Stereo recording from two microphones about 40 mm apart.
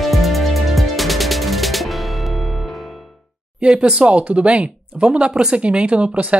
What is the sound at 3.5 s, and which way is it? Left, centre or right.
Speech, right.